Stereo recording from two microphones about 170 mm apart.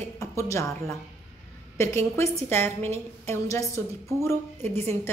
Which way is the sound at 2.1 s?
15° left (ahead or behind).